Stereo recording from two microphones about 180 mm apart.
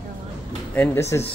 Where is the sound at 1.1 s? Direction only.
15° left (ahead or behind).